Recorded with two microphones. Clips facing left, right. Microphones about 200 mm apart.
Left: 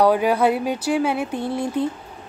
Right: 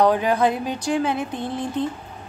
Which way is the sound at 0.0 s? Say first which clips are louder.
Left 1 dB; 10° left (ahead or behind).